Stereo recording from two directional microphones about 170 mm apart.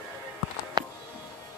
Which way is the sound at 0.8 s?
20° right (ahead or behind).